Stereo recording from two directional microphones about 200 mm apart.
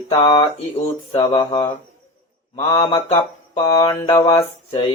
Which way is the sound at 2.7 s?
20° left (ahead or behind).